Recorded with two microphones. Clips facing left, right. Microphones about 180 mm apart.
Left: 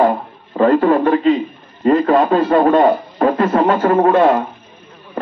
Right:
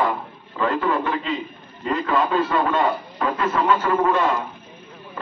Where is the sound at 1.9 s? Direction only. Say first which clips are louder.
Left 9 dB; 45° left (ahead or behind).